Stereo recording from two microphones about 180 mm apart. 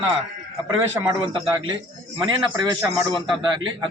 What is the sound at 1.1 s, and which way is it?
A man's voice, 25° right (ahead or behind).